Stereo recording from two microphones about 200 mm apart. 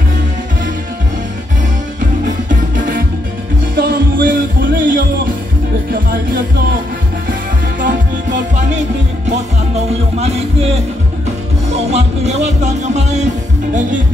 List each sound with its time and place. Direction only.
3.7 s music: 45° right (ahead or behind)
7.8 s music: 40° right (ahead or behind)
9.8 s music: 30° right (ahead or behind)
11.9 s music: 35° right (ahead or behind)